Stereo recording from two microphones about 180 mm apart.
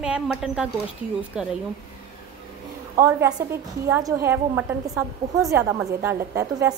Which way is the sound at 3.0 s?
20° right (ahead or behind).